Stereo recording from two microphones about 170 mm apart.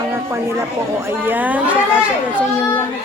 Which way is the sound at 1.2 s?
10° right (ahead or behind).